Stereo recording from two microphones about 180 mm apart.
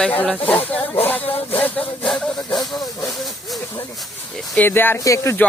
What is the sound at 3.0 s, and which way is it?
Speech, centre (ahead or behind).